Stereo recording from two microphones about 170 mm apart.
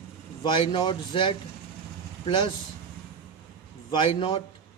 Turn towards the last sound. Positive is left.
turn(degrees=30)  # may be behind; listen again after turning